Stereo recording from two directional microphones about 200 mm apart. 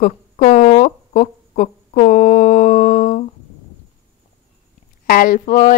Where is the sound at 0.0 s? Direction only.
40° left (ahead or behind).